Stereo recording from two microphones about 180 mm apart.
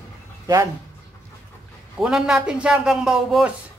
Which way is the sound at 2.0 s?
5° right (ahead or behind).